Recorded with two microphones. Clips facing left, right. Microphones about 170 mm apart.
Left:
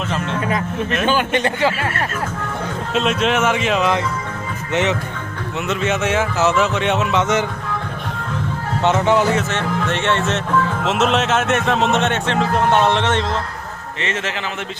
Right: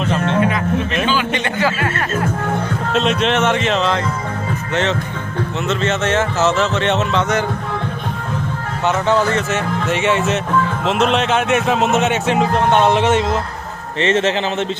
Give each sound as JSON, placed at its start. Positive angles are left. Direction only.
{"t": 1.0, "sound": "a man's voice", "side_deg": 50}
{"t": 1.5, "sound": "speech", "side_deg": 25}
{"t": 2.9, "sound": "speech", "side_deg": 5}
{"t": 8.8, "sound": "speech", "side_deg": 20}
{"t": 9.5, "sound": "speech", "side_deg": -5}
{"t": 14.0, "sound": "speech", "side_deg": -30}